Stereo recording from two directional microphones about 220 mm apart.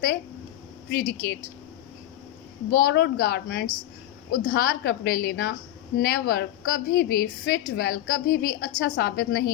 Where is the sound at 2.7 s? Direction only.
40° left (ahead or behind).